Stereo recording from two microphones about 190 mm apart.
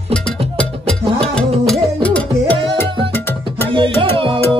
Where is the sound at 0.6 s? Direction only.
5° left (ahead or behind).